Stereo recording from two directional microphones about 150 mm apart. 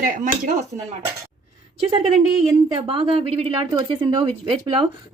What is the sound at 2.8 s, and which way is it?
Speech, 35° right (ahead or behind).